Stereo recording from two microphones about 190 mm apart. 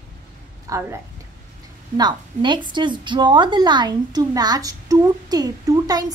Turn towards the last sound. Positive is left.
turn(degrees=-20)  # may be behind; listen again after turning